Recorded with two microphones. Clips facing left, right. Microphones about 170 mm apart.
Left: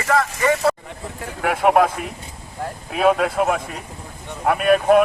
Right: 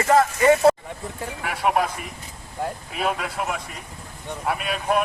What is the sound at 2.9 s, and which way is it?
Speech, 55° left (ahead or behind).